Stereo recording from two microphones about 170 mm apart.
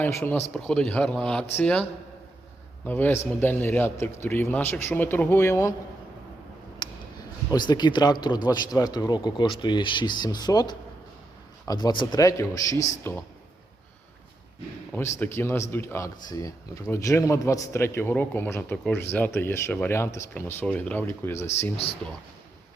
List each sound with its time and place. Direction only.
0.0 s speech: 15° left (ahead or behind)
0.5 s speech: 5° left (ahead or behind)
6.8 s a sound: 25° left (ahead or behind)
7.5 s speech: 25° left (ahead or behind)
14.9 s speech: 15° left (ahead or behind)